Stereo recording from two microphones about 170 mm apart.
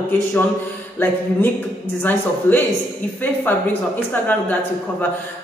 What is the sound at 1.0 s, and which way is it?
A woman's voice, 10° left (ahead or behind).